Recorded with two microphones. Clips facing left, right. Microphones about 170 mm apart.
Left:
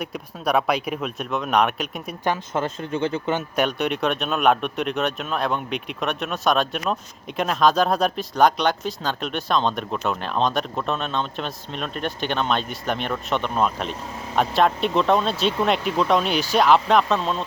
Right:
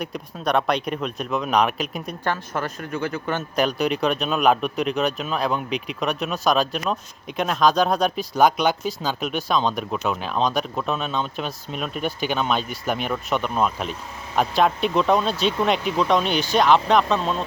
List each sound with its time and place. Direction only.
0.0 s speech: 5° left (ahead or behind)
2.2 s speech: 20° left (ahead or behind)
3.5 s speech: centre (ahead or behind)